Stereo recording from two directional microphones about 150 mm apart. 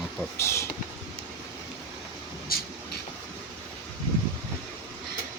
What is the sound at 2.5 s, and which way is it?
Vehicle, 85° left.